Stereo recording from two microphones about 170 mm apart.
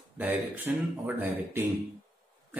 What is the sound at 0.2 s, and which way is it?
A man's voice, 10° right (ahead or behind).